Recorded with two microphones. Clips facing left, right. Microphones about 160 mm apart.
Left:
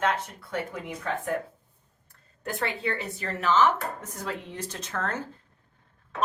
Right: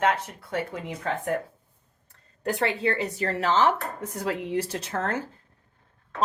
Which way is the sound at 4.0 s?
10° right (ahead or behind).